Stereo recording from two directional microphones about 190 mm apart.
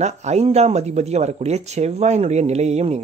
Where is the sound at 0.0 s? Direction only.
35° right (ahead or behind).